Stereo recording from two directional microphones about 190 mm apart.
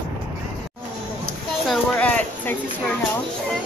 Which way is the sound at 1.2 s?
5° left (ahead or behind).